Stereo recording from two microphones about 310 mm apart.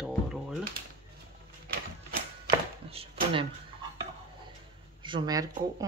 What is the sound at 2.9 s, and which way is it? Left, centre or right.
Speech, centre.